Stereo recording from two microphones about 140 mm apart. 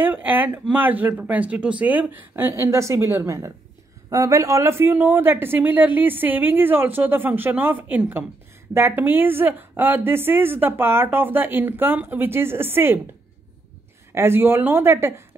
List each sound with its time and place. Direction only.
0.0 s a woman's voice: 10° right (ahead or behind)
14.1 s a woman's voice: 15° right (ahead or behind)